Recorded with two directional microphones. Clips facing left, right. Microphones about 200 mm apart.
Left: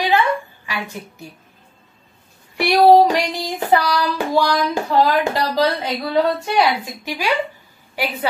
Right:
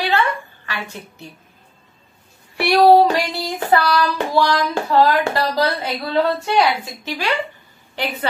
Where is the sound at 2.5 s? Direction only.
15° left (ahead or behind).